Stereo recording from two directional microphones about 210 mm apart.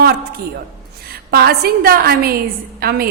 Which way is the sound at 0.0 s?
45° right (ahead or behind).